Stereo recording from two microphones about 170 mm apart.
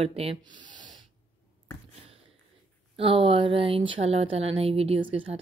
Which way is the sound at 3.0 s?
30° right (ahead or behind).